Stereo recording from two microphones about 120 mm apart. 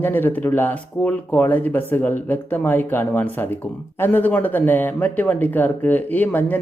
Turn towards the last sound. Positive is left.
turn(degrees=15)  # may be behind; listen again after turning